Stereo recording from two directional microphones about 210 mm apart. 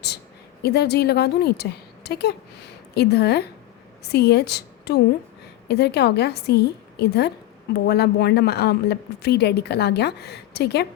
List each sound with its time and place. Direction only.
0.6 s a woman's voice: 50° left (ahead or behind)